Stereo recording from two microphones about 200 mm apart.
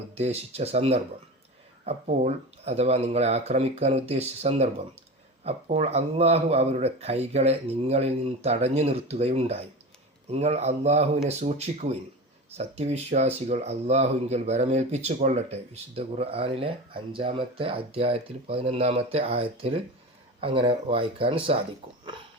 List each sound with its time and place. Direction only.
0.1 s speech: 30° right (ahead or behind)